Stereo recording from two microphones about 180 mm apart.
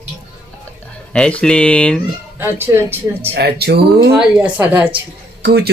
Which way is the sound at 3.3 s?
65° right (ahead or behind).